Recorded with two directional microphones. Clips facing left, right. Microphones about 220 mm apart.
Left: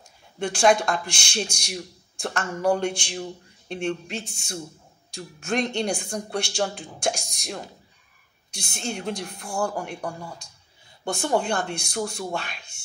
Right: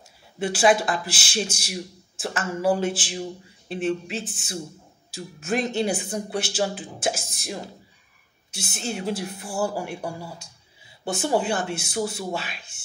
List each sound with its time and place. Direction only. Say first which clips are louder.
0.4 s speech: even; 5° right (ahead or behind)